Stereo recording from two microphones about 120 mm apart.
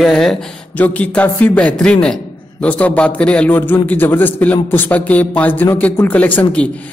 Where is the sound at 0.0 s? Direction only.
5° left (ahead or behind).